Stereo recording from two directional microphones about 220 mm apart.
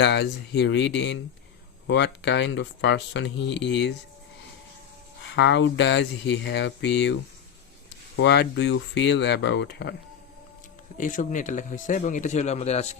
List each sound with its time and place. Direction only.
0.0 s speech: 50° left (ahead or behind)
5.3 s speech: 55° left (ahead or behind)
10.9 s speech: 35° left (ahead or behind)